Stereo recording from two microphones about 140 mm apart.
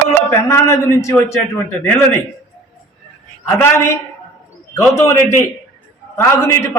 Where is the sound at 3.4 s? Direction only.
15° left (ahead or behind).